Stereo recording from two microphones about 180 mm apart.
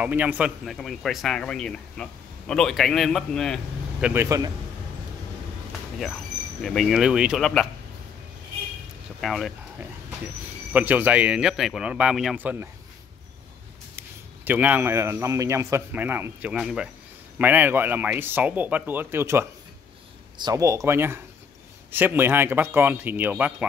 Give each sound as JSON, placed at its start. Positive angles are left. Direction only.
{"t": 0.0, "sound": "speech", "side_deg": -10}
{"t": 4.1, "sound": "a man's voice", "side_deg": -15}
{"t": 6.6, "sound": "speech", "side_deg": 5}
{"t": 9.2, "sound": "a man's voice", "side_deg": 0}
{"t": 13.9, "sound": "a man's voice", "side_deg": -10}